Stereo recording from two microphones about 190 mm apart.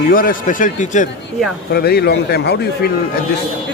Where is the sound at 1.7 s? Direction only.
55° left (ahead or behind).